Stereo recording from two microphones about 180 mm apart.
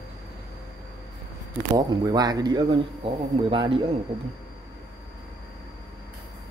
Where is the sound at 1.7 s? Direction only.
25° right (ahead or behind).